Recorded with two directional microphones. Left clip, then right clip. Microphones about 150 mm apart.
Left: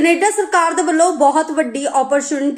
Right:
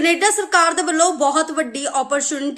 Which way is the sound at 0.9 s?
40° right (ahead or behind).